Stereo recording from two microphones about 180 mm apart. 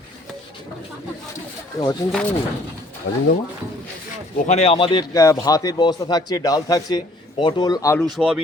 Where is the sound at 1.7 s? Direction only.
20° left (ahead or behind).